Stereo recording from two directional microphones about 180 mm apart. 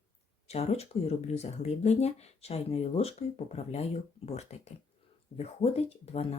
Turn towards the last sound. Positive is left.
turn(degrees=35)  # may be behind; listen again after turning